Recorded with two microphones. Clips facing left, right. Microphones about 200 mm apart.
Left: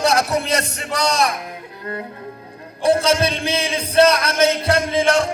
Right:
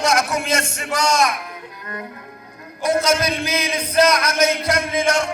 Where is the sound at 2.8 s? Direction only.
30° left (ahead or behind).